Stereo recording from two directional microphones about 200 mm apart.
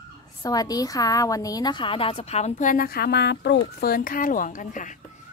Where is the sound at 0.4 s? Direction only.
20° left (ahead or behind); by 3.5 s 55° left (ahead or behind).